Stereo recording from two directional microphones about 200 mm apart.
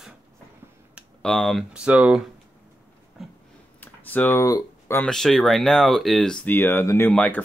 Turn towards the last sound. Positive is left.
turn(degrees=5)  # may be behind; listen again after turning